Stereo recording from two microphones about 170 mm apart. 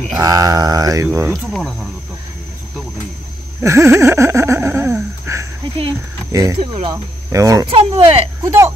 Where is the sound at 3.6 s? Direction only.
15° right (ahead or behind).